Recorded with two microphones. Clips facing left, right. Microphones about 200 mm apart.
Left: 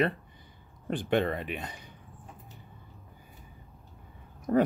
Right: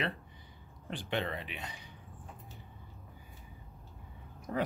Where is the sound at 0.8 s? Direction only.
50° left (ahead or behind).